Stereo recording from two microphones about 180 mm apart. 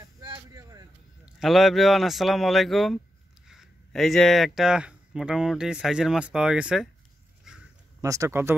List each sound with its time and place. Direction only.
0.0 s a sound: 20° right (ahead or behind)
1.2 s speech: centre (ahead or behind)
8.0 s speech: 15° right (ahead or behind)